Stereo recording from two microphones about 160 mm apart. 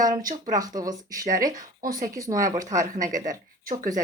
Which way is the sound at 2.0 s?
20° right (ahead or behind).